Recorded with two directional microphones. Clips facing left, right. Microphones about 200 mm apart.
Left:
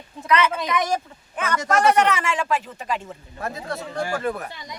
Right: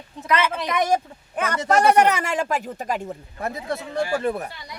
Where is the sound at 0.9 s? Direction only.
30° right (ahead or behind).